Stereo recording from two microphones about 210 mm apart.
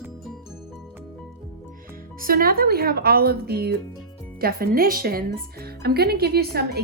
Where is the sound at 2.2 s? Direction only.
45° right (ahead or behind).